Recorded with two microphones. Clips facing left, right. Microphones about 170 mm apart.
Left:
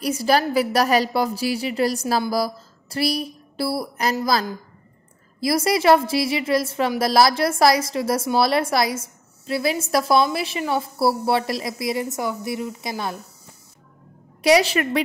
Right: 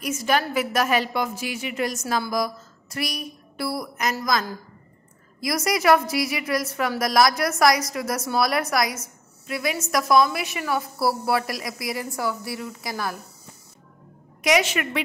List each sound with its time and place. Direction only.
0.0 s a woman's voice: 35° left (ahead or behind)
14.4 s a woman's voice: 35° left (ahead or behind)